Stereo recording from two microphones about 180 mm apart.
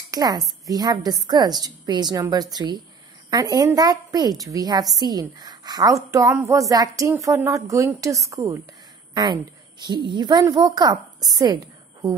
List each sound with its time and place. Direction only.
0.1 s a woman's voice: 20° right (ahead or behind)